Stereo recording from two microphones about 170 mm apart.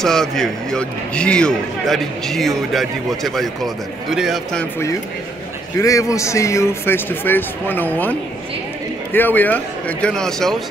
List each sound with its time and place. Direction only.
0.0 s a man's voice: 5° left (ahead or behind)
5.8 s speech: 20° left (ahead or behind); by 10.5 s 5° left (ahead or behind)